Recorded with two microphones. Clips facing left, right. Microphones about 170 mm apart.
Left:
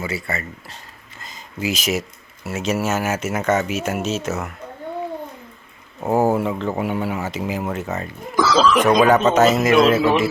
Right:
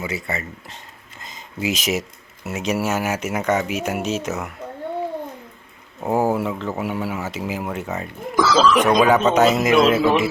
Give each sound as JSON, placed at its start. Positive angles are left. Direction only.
{"t": 0.0, "sound": "speech", "side_deg": -20}
{"t": 6.0, "sound": "speech", "side_deg": 5}
{"t": 8.4, "sound": "speech", "side_deg": 0}